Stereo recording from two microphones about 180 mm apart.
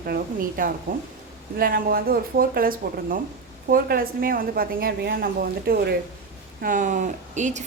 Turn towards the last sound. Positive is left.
turn(degrees=-40)  # may be behind; listen again after turning